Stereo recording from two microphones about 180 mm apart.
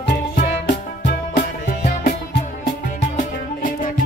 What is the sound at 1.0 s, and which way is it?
Music, 65° left (ahead or behind).